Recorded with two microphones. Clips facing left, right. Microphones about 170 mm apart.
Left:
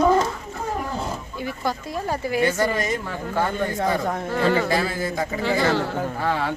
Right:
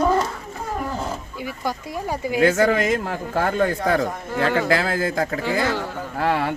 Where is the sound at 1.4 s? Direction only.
10° right (ahead or behind).